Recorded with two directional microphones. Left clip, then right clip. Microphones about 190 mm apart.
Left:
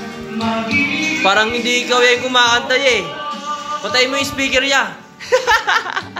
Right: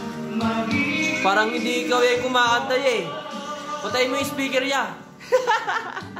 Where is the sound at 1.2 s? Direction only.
5° left (ahead or behind).